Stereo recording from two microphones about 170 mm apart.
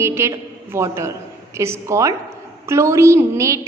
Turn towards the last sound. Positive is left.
turn(degrees=-15)  # may be behind; listen again after turning